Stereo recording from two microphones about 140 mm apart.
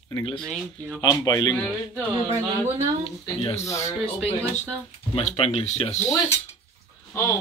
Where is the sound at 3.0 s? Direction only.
45° left (ahead or behind).